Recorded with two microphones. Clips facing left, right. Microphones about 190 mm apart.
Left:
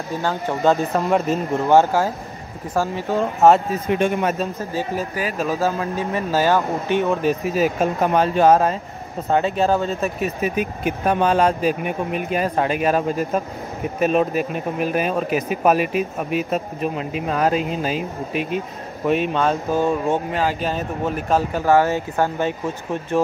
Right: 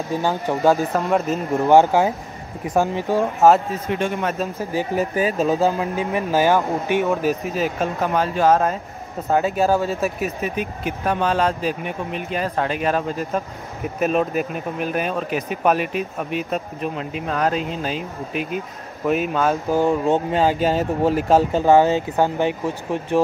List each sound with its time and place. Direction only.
0.2 s speech: 15° right (ahead or behind)
0.7 s speech: centre (ahead or behind)
1.6 s speech: 15° right (ahead or behind)
3.3 s speech: centre (ahead or behind)
4.0 s speech: 15° left (ahead or behind)
4.6 s speech: 15° right (ahead or behind)
7.5 s speech: 10° left (ahead or behind)
8.1 s speech: 20° left (ahead or behind)
9.3 s speech: 5° right (ahead or behind)
10.5 s speech: 10° left (ahead or behind); by 19.5 s 5° right (ahead or behind)
19.7 s speech: 15° right (ahead or behind)